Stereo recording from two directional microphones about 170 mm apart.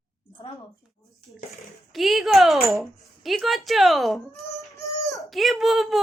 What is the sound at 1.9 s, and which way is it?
Speech, centre (ahead or behind).